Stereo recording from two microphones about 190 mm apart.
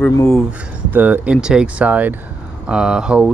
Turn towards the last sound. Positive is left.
turn(degrees=-5)  # may be behind; listen again after turning